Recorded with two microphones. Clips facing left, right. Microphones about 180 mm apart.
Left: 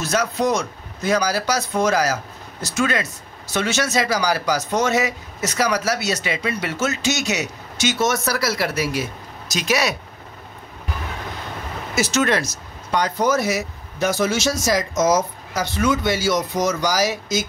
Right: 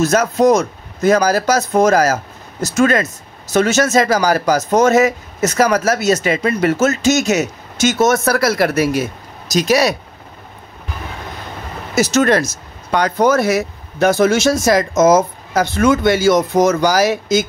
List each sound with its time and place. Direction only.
0.0 s speech: 45° right (ahead or behind)
11.9 s speech: 40° right (ahead or behind)
12.9 s speech: 60° right (ahead or behind)